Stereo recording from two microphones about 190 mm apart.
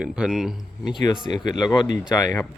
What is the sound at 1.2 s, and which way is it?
Speech, 20° left (ahead or behind).